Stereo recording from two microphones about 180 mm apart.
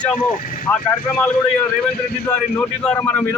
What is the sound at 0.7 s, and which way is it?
A man's voice, 10° left (ahead or behind).